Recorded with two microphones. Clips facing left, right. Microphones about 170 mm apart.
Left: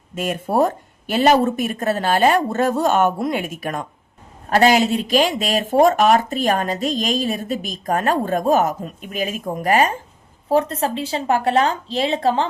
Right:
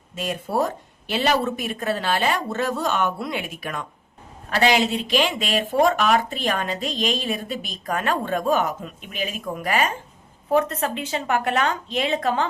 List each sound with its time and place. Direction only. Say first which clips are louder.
0.2 s speech: left 5 dB; 50° left (ahead or behind); by 12.5 s 30° left (ahead or behind)